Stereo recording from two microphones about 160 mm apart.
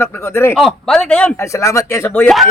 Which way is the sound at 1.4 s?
20° left (ahead or behind).